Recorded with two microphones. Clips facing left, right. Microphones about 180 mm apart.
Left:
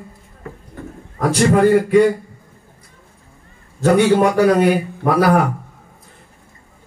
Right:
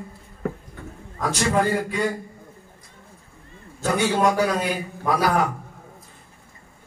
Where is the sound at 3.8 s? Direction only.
65° left (ahead or behind).